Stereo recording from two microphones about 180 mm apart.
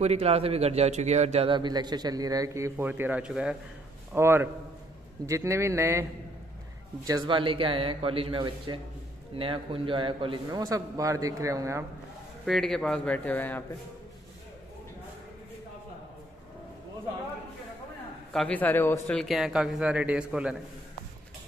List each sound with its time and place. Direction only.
0.0 s a man's voice: 35° right (ahead or behind); by 6.0 s 15° right (ahead or behind)
7.1 s a man's voice: 25° right (ahead or behind)
12.4 s a man's voice: centre (ahead or behind)
18.3 s speech: 5° left (ahead or behind)